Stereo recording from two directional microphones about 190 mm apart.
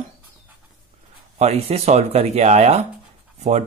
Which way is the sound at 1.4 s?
35° right (ahead or behind).